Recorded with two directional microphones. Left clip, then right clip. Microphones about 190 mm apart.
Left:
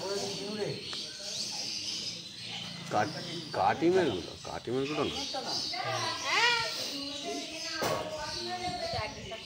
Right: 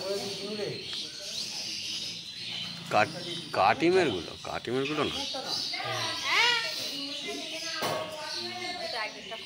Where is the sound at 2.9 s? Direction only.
15° right (ahead or behind).